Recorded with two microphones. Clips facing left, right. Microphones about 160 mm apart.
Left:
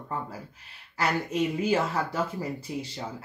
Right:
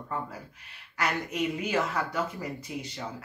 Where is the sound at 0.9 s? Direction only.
30° left (ahead or behind).